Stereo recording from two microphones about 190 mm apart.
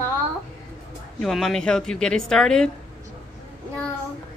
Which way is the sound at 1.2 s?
Centre (ahead or behind).